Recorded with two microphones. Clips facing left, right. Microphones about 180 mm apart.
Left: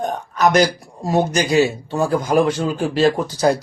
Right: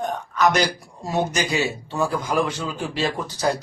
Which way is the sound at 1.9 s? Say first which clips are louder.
Left 6 dB; 40° left (ahead or behind).